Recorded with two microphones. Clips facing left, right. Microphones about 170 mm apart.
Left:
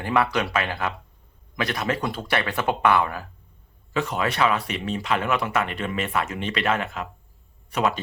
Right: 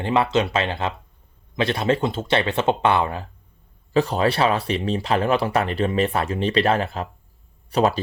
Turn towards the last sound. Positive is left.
turn(degrees=-35)  # may be behind; listen again after turning